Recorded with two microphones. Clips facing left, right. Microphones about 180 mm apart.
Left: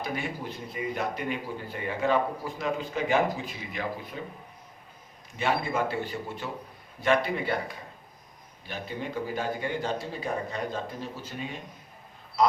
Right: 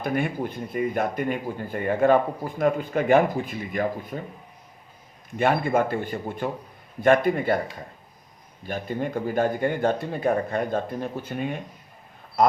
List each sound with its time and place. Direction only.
0.0 s speech: 55° right (ahead or behind)
5.4 s speech: 55° right (ahead or behind)
8.6 s speech: 50° right (ahead or behind)
12.4 s a sound: 55° right (ahead or behind)